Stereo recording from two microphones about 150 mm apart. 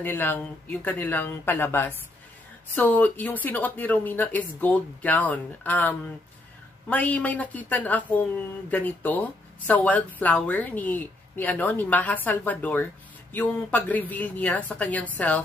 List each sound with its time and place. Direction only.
0.0 s speech: 15° left (ahead or behind)